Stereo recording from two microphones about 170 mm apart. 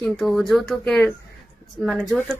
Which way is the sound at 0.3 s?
Centre (ahead or behind).